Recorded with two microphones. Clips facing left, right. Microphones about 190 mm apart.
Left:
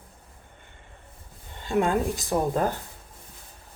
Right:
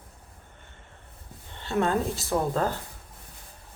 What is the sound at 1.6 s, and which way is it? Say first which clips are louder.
Speech: left 2 dB; 15° left (ahead or behind).